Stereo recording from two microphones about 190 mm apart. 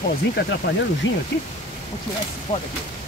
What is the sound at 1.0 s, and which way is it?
Speech, 85° left.